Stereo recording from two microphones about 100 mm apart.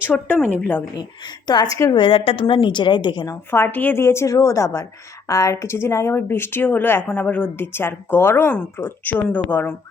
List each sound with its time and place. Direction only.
0.1 s speech: 10° left (ahead or behind)
0.4 s speech: 20° left (ahead or behind)
1.5 s a woman's voice: 45° left (ahead or behind)
1.9 s a woman's voice: 60° left (ahead or behind)
3.5 s speech: 20° left (ahead or behind)